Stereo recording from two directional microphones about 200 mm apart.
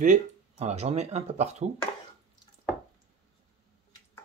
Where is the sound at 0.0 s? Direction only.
35° right (ahead or behind).